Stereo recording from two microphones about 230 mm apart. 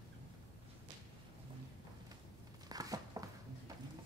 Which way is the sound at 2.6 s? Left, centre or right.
Centre.